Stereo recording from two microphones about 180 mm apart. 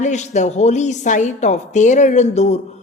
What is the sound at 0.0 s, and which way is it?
A woman's voice, 40° left (ahead or behind).